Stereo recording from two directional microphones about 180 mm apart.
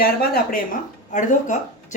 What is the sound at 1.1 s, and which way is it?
Speech, 45° left (ahead or behind).